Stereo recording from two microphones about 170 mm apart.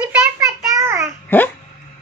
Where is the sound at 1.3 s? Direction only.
10° left (ahead or behind).